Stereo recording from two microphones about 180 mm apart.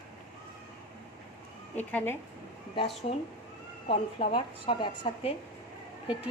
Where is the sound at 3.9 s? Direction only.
30° left (ahead or behind).